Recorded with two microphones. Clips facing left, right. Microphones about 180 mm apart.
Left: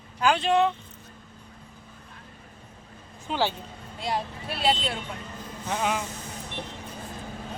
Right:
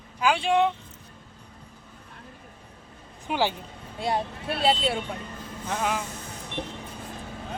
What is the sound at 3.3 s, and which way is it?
Speech, 15° right (ahead or behind).